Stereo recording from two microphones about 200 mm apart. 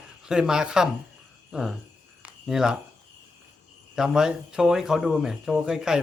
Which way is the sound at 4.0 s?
5° right (ahead or behind).